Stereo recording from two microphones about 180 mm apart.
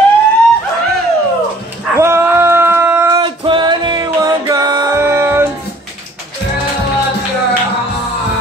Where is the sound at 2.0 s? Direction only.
15° right (ahead or behind).